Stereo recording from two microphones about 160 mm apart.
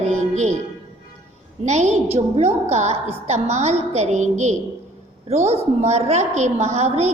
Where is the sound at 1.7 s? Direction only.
45° right (ahead or behind).